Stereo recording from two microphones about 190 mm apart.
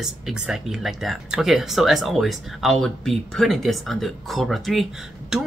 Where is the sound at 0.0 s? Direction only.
5° right (ahead or behind).